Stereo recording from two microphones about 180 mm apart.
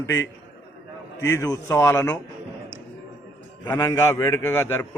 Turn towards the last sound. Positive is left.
turn(degrees=15)  # may be behind; listen again after turning